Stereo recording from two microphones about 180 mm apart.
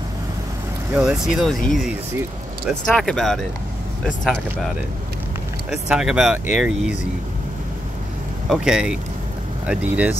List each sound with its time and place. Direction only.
0.9 s speech: 5° right (ahead or behind)
3.0 s speech: 5° left (ahead or behind)
5.7 s speech: 5° right (ahead or behind)
8.5 s speech: 5° right (ahead or behind)